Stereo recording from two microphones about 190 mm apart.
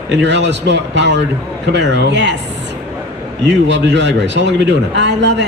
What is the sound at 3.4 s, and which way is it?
A man's voice, 65° right (ahead or behind).